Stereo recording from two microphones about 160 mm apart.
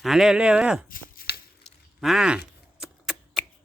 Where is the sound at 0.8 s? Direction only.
65° left (ahead or behind).